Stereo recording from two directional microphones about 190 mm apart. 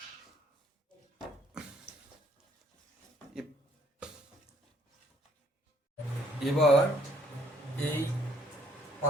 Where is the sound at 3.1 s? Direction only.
5° right (ahead or behind).